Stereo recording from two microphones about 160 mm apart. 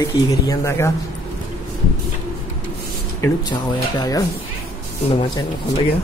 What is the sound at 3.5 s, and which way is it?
Speech, 25° left (ahead or behind).